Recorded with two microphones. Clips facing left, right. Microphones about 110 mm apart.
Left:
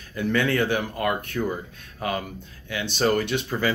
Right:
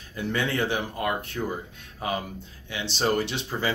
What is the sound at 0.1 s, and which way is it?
Speech, 25° right (ahead or behind).